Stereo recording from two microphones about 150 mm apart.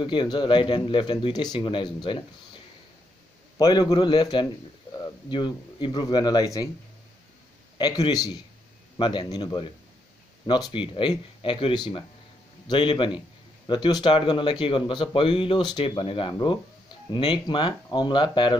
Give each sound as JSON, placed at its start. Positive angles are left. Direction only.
{"t": 0.0, "sound": "a man's voice", "side_deg": 30}
{"t": 7.7, "sound": "a man's voice", "side_deg": 30}